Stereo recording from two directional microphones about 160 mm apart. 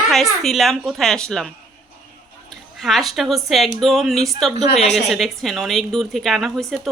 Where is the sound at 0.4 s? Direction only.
Centre (ahead or behind).